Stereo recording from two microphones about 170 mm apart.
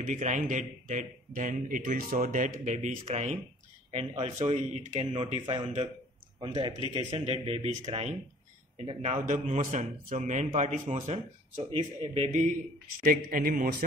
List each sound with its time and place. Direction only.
0.0 s a man's voice: 50° right (ahead or behind)
5.1 s a man's voice: 30° right (ahead or behind); by 12.5 s 45° right (ahead or behind)
13.0 s a man's voice: 60° right (ahead or behind)